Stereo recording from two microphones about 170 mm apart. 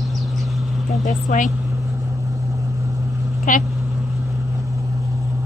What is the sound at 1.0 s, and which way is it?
Speech, 50° left (ahead or behind).